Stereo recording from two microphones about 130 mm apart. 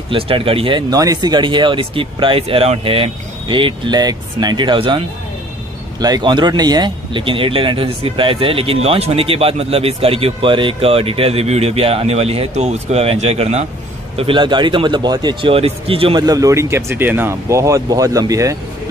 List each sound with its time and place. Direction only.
0.1 s speech: 45° right (ahead or behind)
14.1 s speech: 40° right (ahead or behind)
15.5 s speech: 45° right (ahead or behind)
16.2 s speech: 25° right (ahead or behind)